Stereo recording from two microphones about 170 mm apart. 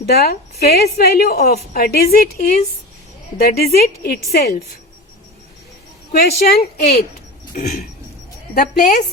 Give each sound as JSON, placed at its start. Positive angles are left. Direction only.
{"t": 0.0, "sound": "a woman's voice", "side_deg": 70}
{"t": 3.3, "sound": "a woman's voice", "side_deg": 65}
{"t": 6.1, "sound": "a woman's voice", "side_deg": 60}
{"t": 7.6, "sound": "a sound", "side_deg": 50}
{"t": 8.5, "sound": "a woman's voice", "side_deg": 60}